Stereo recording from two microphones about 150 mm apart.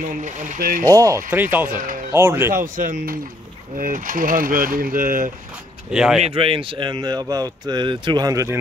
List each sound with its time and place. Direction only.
0.0 s speech: 55° right (ahead or behind)
0.8 s speech: 20° right (ahead or behind)
1.8 s speech: 65° right (ahead or behind)
2.1 s speech: 15° right (ahead or behind)
2.5 s speech: 65° right (ahead or behind)
5.9 s speech: 5° right (ahead or behind)
6.2 s speech: 40° right (ahead or behind); by 8.5 s 20° right (ahead or behind)